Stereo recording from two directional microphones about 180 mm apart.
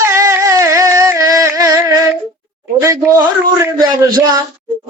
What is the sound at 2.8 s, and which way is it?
Speech, 20° right (ahead or behind).